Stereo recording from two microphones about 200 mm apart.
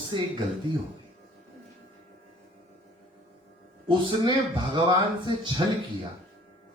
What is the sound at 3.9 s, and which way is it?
A man's voice, 25° right (ahead or behind).